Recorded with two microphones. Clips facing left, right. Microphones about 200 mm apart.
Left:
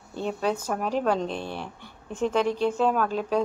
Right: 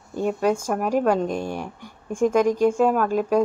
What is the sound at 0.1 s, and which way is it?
Speech, 10° right (ahead or behind).